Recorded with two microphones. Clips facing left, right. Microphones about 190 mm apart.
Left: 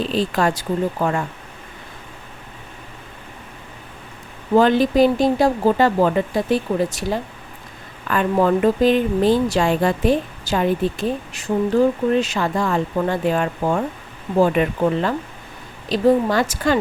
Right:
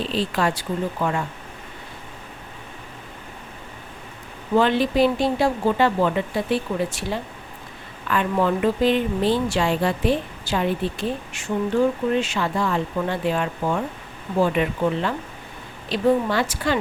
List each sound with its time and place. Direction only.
0.0 s speech: 45° left (ahead or behind)
4.5 s speech: 40° left (ahead or behind)